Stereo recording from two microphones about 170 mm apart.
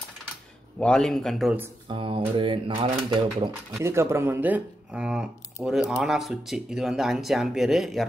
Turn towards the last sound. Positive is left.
turn(degrees=0)  # may be behind; listen again after turning